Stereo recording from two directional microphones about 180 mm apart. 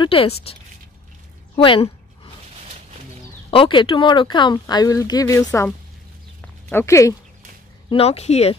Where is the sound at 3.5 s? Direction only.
30° left (ahead or behind).